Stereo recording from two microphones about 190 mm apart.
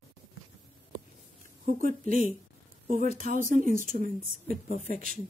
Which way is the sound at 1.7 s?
45° right (ahead or behind).